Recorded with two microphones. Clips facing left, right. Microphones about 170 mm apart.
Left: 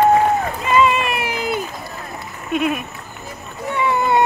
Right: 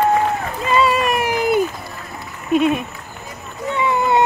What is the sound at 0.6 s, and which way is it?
Run, 35° right (ahead or behind).